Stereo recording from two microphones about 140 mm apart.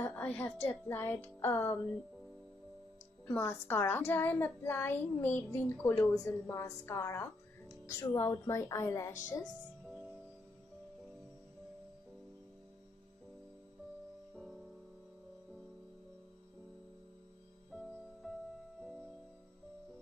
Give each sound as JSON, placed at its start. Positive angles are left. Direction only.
{"t": 0.0, "sound": "a child's voice", "side_deg": 15}
{"t": 3.3, "sound": "a child's voice", "side_deg": 15}
{"t": 14.3, "sound": "music", "side_deg": -5}
{"t": 17.7, "sound": "music", "side_deg": 0}